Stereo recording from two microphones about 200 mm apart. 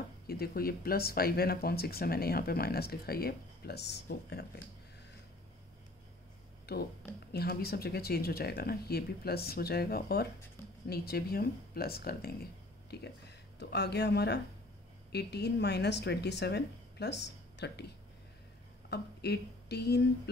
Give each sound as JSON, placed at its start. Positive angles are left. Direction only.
{"t": 0.3, "sound": "speech", "side_deg": 50}
{"t": 6.7, "sound": "speech", "side_deg": 55}